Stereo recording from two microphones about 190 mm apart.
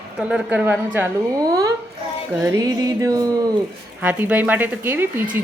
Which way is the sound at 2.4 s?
15° right (ahead or behind).